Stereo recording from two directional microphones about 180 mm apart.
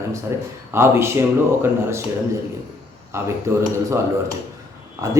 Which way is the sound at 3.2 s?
15° right (ahead or behind).